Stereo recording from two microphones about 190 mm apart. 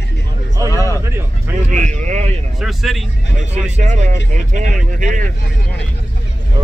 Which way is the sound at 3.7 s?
35° right (ahead or behind).